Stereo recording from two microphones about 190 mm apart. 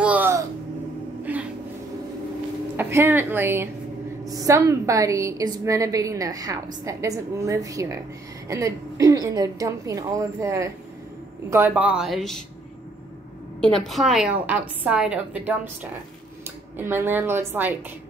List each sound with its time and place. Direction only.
0.0 s music: 10° right (ahead or behind)
1.3 s a sound: 10° right (ahead or behind)
2.8 s a woman's voice: 10° right (ahead or behind)
13.6 s a woman's voice: centre (ahead or behind)